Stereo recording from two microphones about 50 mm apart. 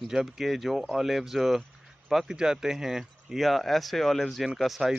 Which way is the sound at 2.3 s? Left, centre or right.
Centre.